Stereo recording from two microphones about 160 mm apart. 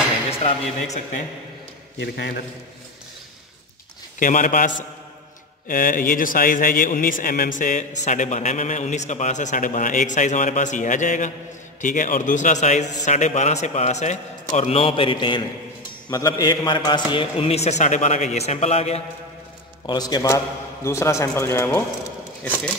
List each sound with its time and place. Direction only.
0.3 s a man's voice: 40° left (ahead or behind)
2.0 s a man's voice: 90° left
4.2 s a man's voice: 55° left (ahead or behind)
19.9 s a man's voice: 25° left (ahead or behind)